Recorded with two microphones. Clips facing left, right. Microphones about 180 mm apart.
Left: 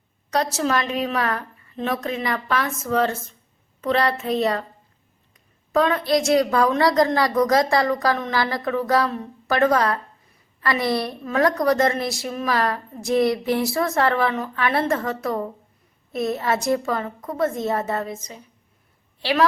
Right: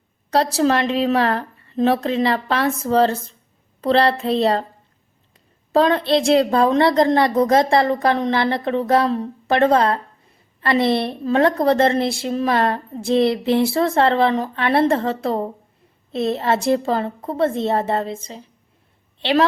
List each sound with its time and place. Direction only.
0.5 s a woman's voice: 30° right (ahead or behind)
5.7 s a woman's voice: 30° right (ahead or behind)